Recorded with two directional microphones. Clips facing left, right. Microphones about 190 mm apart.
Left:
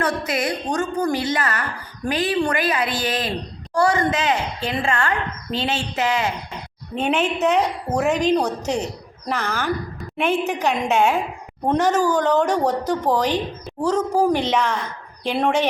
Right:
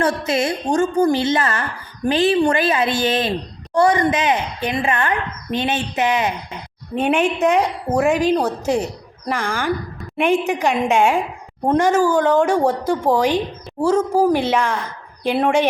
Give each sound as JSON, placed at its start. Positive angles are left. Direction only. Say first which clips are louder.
{"t": 0.0, "sound": "a woman's voice", "louder": "right 4 dB", "side_deg": -25}